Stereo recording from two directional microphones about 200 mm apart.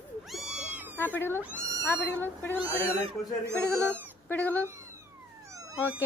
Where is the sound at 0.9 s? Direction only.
10° left (ahead or behind).